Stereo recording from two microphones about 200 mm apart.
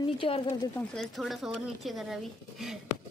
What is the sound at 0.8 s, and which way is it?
Speech, centre (ahead or behind).